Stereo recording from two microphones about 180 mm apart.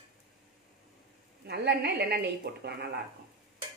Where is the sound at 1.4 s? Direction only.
65° right (ahead or behind).